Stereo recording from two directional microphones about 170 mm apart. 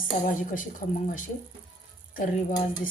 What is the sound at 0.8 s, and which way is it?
Speech, 40° left (ahead or behind).